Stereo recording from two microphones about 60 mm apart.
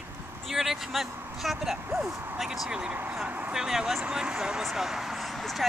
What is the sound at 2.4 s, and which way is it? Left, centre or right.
Speech, centre.